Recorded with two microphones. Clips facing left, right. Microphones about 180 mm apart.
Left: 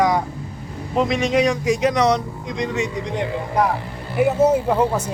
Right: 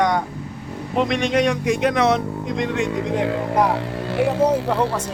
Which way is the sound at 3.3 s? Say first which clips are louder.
Left 1 dB; 80° right.